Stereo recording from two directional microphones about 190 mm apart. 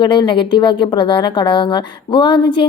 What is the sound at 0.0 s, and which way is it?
A woman's voice, 25° left (ahead or behind).